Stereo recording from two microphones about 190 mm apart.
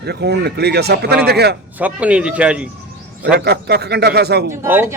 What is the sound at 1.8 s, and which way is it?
Speech, 5° right (ahead or behind).